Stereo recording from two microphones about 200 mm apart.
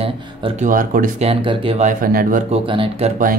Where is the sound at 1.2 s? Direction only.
25° right (ahead or behind); by 2.4 s 45° right (ahead or behind).